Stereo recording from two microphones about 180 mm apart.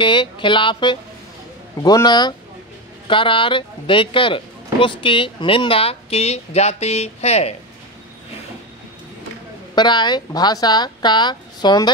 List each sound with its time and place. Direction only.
0.0 s speech: 25° left (ahead or behind)
9.8 s speech: 25° left (ahead or behind)